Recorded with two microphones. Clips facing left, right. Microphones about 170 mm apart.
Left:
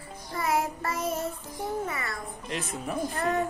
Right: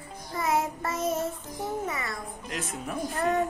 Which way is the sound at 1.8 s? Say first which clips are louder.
Right 1 dB; 25° right (ahead or behind).